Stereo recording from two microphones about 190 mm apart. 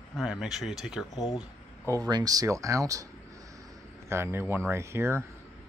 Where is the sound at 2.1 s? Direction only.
20° right (ahead or behind).